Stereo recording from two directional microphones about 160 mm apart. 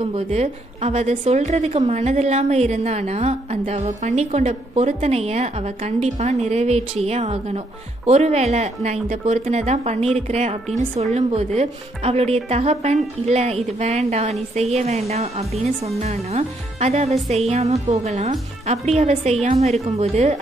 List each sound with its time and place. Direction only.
0.0 s a woman's voice: 40° right (ahead or behind)